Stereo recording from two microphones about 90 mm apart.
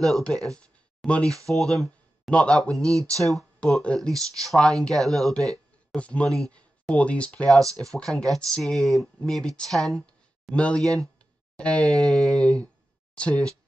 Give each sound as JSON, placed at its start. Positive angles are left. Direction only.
{"t": 0.0, "sound": "speech", "side_deg": 5}
{"t": 3.0, "sound": "speech", "side_deg": -40}
{"t": 3.7, "sound": "speech", "side_deg": 10}
{"t": 5.9, "sound": "speech", "side_deg": 15}
{"t": 7.6, "sound": "speech", "side_deg": -40}
{"t": 8.0, "sound": "speech", "side_deg": 5}